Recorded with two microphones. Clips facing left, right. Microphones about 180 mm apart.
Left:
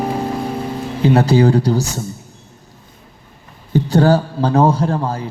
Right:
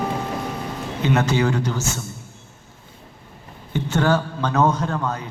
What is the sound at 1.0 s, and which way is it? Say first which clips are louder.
A man's voice: left 7 dB; 35° left (ahead or behind).